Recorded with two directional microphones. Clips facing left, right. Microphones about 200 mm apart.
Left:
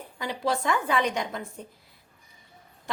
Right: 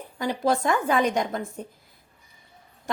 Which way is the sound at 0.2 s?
45° right (ahead or behind).